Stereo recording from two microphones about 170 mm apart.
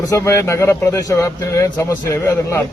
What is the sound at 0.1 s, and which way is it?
A man's voice, 15° left (ahead or behind).